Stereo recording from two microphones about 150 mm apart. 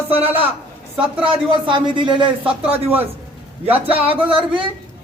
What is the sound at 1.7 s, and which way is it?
Speech, 35° right (ahead or behind).